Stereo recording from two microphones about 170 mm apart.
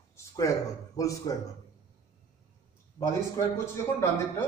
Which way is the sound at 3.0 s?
15° left (ahead or behind).